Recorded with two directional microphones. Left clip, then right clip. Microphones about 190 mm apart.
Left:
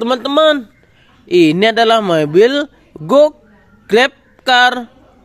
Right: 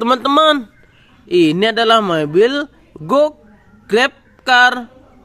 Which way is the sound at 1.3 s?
10° left (ahead or behind).